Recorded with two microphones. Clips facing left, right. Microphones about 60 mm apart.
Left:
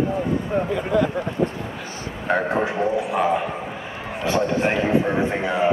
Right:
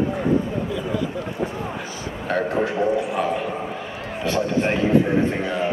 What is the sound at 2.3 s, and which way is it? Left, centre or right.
Speech, centre.